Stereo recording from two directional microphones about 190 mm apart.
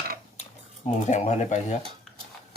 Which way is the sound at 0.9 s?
40° left (ahead or behind).